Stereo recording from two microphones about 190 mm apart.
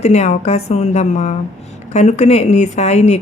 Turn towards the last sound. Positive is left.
turn(degrees=35)  # may be behind; listen again after turning